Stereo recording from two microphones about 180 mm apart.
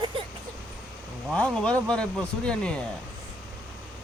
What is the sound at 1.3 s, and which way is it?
Speech, 5° left (ahead or behind).